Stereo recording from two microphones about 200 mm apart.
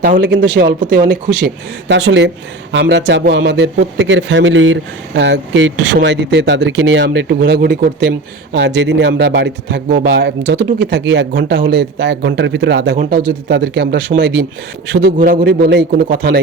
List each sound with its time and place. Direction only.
0.6 s a man's voice: 45° right (ahead or behind)
1.1 s a man's voice: 60° right (ahead or behind)